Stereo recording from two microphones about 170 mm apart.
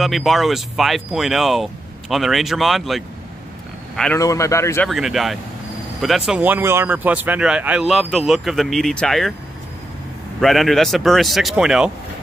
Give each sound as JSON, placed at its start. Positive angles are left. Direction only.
{"t": 0.0, "sound": "a man's voice", "side_deg": 0}
{"t": 4.2, "sound": "a man's voice", "side_deg": 20}
{"t": 4.8, "sound": "speech", "side_deg": 0}
{"t": 10.4, "sound": "speech", "side_deg": 0}